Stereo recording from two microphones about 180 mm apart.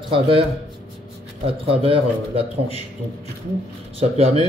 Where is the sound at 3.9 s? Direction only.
35° right (ahead or behind).